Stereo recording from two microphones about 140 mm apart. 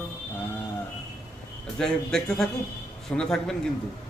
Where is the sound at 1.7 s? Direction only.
5° left (ahead or behind).